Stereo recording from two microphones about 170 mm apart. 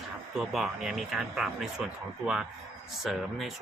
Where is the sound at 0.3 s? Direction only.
Centre (ahead or behind).